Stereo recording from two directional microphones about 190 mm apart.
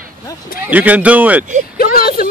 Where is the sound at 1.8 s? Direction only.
50° left (ahead or behind).